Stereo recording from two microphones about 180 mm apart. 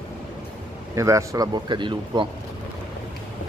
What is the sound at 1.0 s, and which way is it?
Speech, 15° right (ahead or behind).